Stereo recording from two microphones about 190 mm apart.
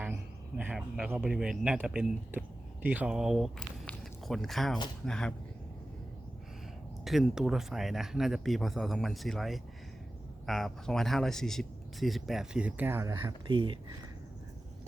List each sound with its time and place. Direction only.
0.0 s a sound: 5° right (ahead or behind)
2.8 s speech: 10° right (ahead or behind)
7.0 s speech: centre (ahead or behind)
13.5 s speech: 25° right (ahead or behind)